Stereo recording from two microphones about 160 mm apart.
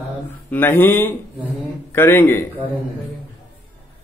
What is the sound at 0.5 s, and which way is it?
Speech, 10° left (ahead or behind).